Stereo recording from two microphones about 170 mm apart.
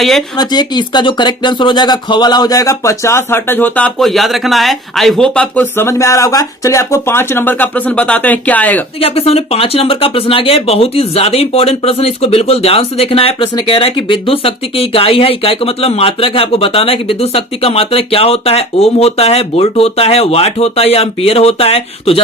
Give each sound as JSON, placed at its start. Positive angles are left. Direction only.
{"t": 0.0, "sound": "speech", "side_deg": 0}
{"t": 0.3, "sound": "speech", "side_deg": 25}
{"t": 9.0, "sound": "speech", "side_deg": 35}